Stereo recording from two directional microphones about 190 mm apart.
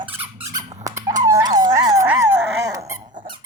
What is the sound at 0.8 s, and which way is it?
Squeak, 15° right (ahead or behind).